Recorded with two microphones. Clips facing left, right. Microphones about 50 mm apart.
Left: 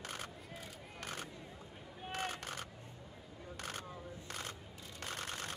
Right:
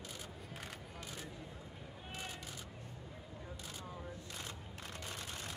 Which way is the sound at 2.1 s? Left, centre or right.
Left.